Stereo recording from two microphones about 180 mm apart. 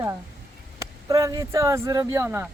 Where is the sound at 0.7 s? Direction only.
15° right (ahead or behind).